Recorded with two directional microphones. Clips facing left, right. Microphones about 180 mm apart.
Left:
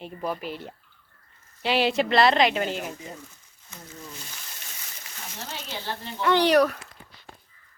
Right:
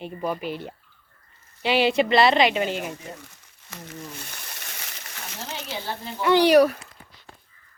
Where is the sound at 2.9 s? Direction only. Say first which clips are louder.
Right 1 dB; 80° right.